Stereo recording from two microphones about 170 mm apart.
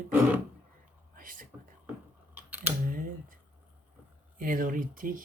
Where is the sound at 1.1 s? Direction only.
55° right (ahead or behind).